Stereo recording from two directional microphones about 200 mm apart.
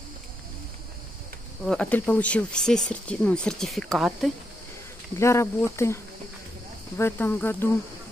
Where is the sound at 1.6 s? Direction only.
5° left (ahead or behind).